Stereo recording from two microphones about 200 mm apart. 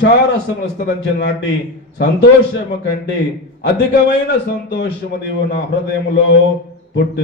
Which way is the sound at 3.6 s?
55° left (ahead or behind).